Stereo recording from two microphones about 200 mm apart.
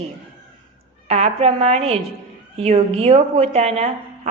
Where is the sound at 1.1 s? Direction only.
30° right (ahead or behind).